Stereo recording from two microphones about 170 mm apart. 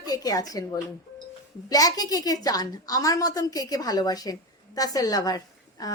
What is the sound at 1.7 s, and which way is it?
A woman's voice, 20° left (ahead or behind).